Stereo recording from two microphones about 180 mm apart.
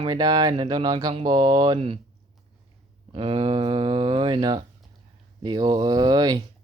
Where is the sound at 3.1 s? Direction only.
30° right (ahead or behind).